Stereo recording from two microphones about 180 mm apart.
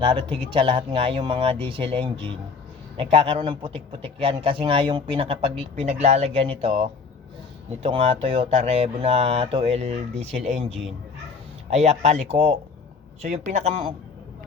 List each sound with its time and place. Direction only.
0.0 s a man's voice: 25° right (ahead or behind)
7.8 s speech: 30° right (ahead or behind)
11.7 s speech: 40° right (ahead or behind)